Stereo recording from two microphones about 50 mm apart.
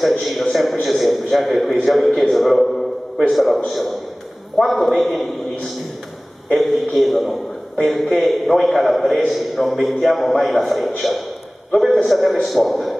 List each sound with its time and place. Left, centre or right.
0.2 s a man's voice: centre